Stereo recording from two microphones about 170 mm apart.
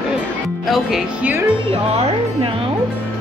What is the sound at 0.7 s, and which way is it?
Speech, centre (ahead or behind).